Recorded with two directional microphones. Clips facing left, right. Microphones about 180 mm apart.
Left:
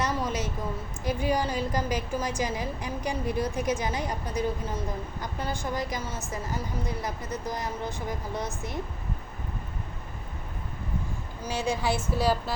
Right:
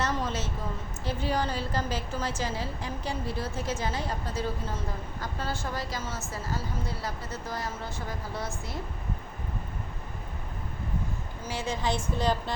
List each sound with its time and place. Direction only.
0.0 s a sound: 10° left (ahead or behind)
1.0 s a woman's voice: 15° left (ahead or behind)
11.4 s a woman's voice: 15° left (ahead or behind)